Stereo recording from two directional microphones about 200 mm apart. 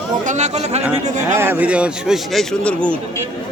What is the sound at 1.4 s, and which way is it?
A man's voice, 10° right (ahead or behind).